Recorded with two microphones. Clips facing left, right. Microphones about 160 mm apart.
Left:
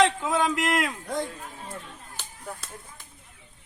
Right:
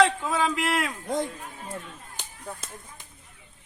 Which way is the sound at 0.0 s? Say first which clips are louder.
Even; 5° left (ahead or behind).